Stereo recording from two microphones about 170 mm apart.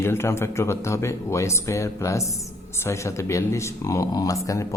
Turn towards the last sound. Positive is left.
turn(degrees=20)  # may be behind; listen again after turning